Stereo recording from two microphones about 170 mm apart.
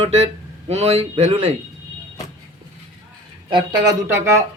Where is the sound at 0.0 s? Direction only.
40° right (ahead or behind).